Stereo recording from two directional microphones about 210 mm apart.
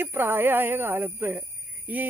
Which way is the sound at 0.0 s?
10° right (ahead or behind).